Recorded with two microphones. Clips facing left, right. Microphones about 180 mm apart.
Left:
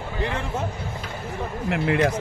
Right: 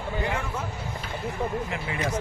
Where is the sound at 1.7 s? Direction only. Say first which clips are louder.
Left 9 dB; 70° left (ahead or behind).